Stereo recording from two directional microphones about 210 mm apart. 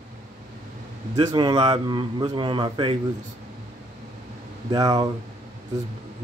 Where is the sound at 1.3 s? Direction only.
20° right (ahead or behind).